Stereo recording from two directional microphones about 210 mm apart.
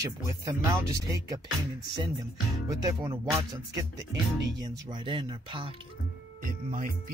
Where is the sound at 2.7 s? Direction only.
15° right (ahead or behind).